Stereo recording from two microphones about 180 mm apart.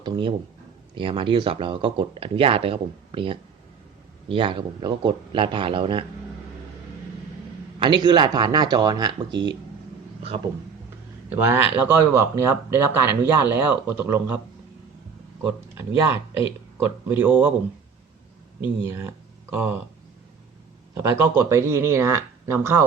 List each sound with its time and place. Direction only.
0.0 s speech: 25° right (ahead or behind)
7.8 s speech: 25° right (ahead or behind)
11.3 s speech: 10° right (ahead or behind)
16.8 s speech: 10° right (ahead or behind)
18.6 s speech: 10° right (ahead or behind)
20.9 s speech: 15° right (ahead or behind)